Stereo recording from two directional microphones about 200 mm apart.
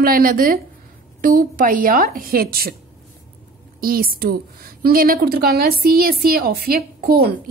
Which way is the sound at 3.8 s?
45° right (ahead or behind).